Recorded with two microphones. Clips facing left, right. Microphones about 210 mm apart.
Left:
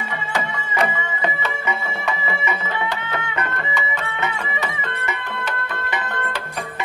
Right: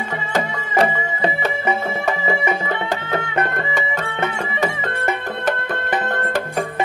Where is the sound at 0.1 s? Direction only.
40° right (ahead or behind).